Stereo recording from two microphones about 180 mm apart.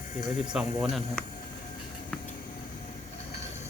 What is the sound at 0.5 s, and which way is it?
Speech, centre (ahead or behind).